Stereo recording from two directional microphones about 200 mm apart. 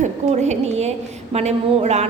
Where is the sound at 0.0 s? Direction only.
35° right (ahead or behind).